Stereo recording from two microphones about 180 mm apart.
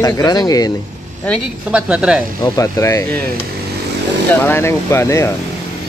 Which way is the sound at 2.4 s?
20° left (ahead or behind).